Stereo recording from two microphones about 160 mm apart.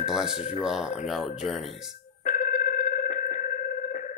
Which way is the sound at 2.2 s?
50° left (ahead or behind).